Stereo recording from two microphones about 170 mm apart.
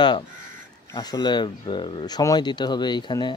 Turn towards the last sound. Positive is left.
turn(degrees=25)  # may be behind; listen again after turning